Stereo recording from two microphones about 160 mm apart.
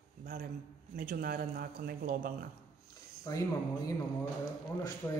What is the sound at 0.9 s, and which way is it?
A man's voice, 65° right (ahead or behind).